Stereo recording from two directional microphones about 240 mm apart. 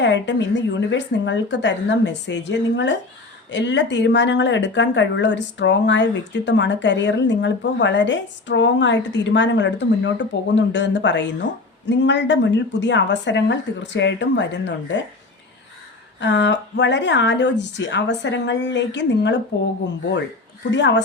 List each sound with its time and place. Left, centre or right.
0.0 s speech: left
16.2 s speech: left
20.7 s speech: left